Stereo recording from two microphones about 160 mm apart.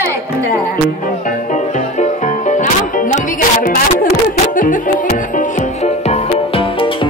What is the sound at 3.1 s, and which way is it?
Music, 60° left (ahead or behind).